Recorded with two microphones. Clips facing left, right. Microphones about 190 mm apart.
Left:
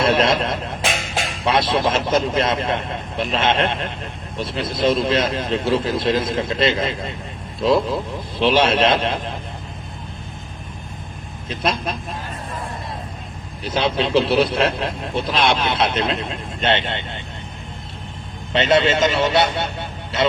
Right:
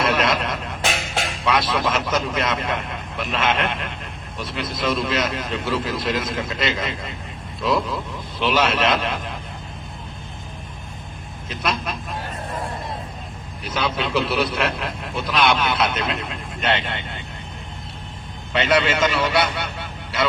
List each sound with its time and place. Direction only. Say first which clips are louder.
0.0 s a sound: left 4 dB; 30° left (ahead or behind)
1.5 s a man's voice: left 3 dB; 30° left (ahead or behind)
11.4 s a man's voice: left 3 dB; 30° left (ahead or behind)
13.7 s a man's voice: left 4 dB; 25° left (ahead or behind)
18.5 s a man's voice: left 3 dB; 25° left (ahead or behind)